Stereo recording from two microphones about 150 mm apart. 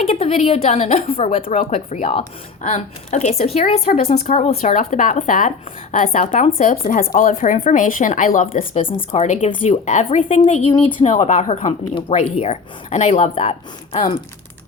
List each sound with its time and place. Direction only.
0.0 s a woman's voice: 45° left (ahead or behind)